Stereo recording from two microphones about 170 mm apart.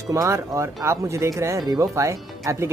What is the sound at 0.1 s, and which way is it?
Speech, 15° right (ahead or behind).